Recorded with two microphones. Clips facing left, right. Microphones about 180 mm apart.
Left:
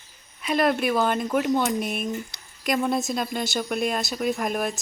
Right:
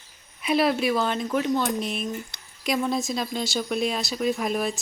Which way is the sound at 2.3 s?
55° right (ahead or behind).